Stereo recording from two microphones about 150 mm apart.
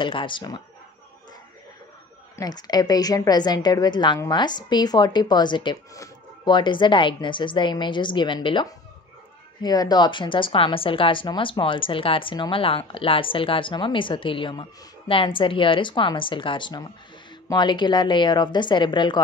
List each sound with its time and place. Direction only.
0.0 s speech: 35° left (ahead or behind)
2.3 s a woman's voice: 25° left (ahead or behind)